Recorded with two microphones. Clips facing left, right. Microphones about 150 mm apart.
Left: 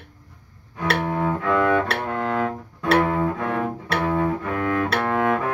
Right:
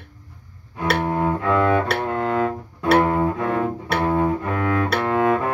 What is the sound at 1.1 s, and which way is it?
Cello, 15° right (ahead or behind).